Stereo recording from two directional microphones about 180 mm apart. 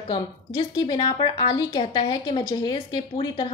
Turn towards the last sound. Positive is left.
turn(degrees=25)  # may be behind; listen again after turning